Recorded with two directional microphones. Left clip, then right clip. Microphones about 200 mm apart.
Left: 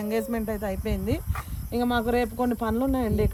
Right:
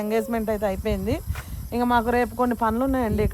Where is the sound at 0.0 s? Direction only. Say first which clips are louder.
Right 4 dB; 35° right (ahead or behind).